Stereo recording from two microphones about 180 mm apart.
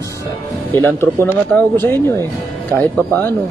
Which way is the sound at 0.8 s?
10° left (ahead or behind).